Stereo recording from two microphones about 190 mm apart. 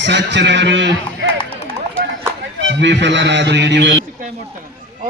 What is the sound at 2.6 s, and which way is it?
A man's voice, 70° right (ahead or behind).